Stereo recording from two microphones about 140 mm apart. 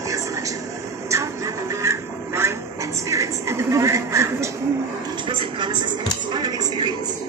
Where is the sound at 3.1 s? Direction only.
20° right (ahead or behind).